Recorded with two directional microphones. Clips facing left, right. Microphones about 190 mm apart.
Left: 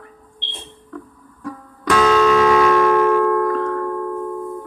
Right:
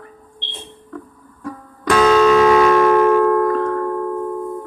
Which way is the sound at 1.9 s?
25° right (ahead or behind).